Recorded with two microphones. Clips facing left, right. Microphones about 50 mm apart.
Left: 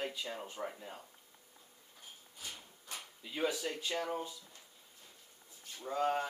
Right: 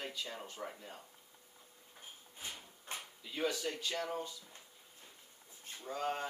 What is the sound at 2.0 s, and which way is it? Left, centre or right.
Drawer open or close, right.